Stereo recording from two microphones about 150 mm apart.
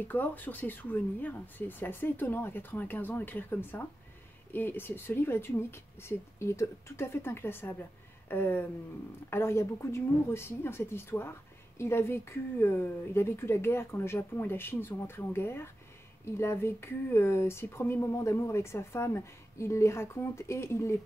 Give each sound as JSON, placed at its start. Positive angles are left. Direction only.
{"t": 0.1, "sound": "speech", "side_deg": 10}